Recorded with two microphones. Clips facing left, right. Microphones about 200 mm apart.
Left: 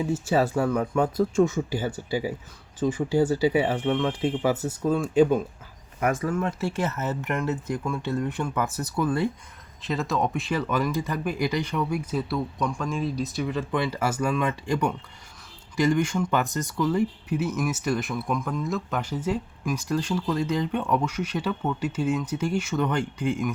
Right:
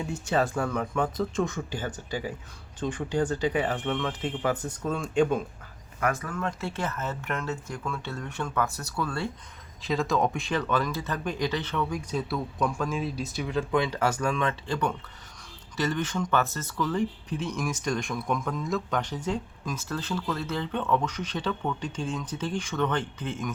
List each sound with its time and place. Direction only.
0.0 s speech: 5° left (ahead or behind)
6.0 s speech: 25° left (ahead or behind)
9.8 s speech: centre (ahead or behind)